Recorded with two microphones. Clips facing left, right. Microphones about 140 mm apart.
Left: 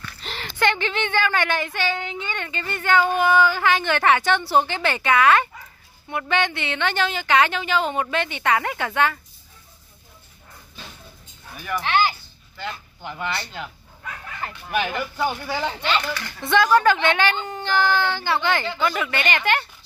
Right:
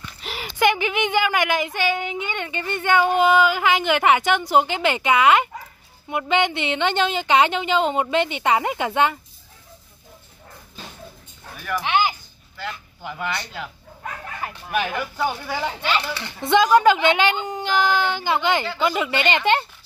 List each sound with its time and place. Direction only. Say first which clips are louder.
0.2 s a woman's voice: right 3 dB; 10° right (ahead or behind)
11.8 s a sound: even; 15° right (ahead or behind)
12.5 s speech: even; 5° right (ahead or behind)
14.4 s speech: even; centre (ahead or behind)
16.1 s a woman's voice: right 3 dB; 25° right (ahead or behind)